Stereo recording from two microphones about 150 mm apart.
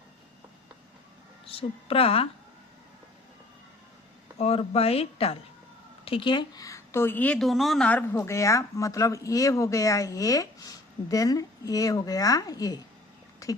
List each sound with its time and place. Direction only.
1.5 s speech: 40° left (ahead or behind)
4.4 s a woman's voice: 45° left (ahead or behind); by 12.8 s 25° left (ahead or behind)